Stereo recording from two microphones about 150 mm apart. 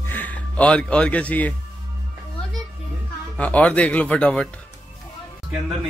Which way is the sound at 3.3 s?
10° left (ahead or behind).